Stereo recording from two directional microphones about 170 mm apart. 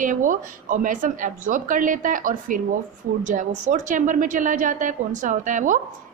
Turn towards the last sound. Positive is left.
turn(degrees=-50)  # may be behind; listen again after turning